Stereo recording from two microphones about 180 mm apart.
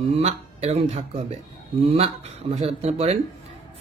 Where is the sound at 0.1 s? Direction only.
40° right (ahead or behind).